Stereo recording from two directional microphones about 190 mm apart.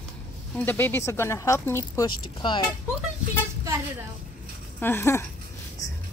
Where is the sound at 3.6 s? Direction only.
15° right (ahead or behind).